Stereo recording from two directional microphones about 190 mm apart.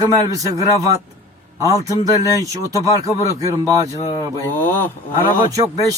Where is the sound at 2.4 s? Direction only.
20° right (ahead or behind).